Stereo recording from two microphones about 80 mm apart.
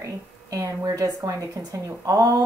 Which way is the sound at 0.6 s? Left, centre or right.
Right.